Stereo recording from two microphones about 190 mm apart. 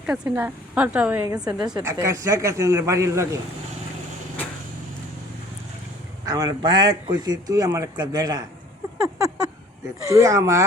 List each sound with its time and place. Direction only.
0.0 s a woman's voice: 5° right (ahead or behind)
1.6 s speech: 20° right (ahead or behind)
6.2 s a man's voice: 20° right (ahead or behind)
9.0 s a sound: 20° right (ahead or behind)
10.1 s speech: 15° right (ahead or behind)